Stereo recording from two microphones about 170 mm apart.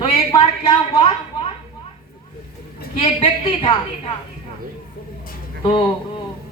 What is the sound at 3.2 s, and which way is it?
Speech, 30° left (ahead or behind).